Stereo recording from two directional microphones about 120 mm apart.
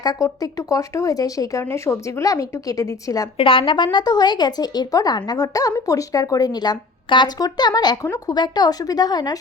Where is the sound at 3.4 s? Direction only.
45° left (ahead or behind).